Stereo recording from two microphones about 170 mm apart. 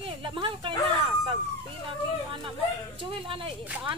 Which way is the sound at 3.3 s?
30° right (ahead or behind).